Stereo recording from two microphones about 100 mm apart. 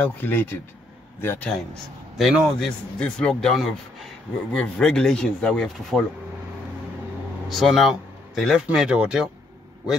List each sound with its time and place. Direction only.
0.0 s speech: 20° left (ahead or behind)
2.1 s speech: centre (ahead or behind)
3.0 s speech: 10° left (ahead or behind)
7.4 s speech: centre (ahead or behind)